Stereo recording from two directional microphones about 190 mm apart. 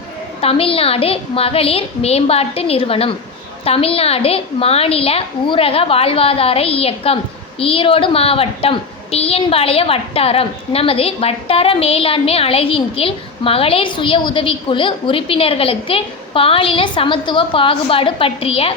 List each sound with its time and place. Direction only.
0.4 s a woman's voice: 30° left (ahead or behind)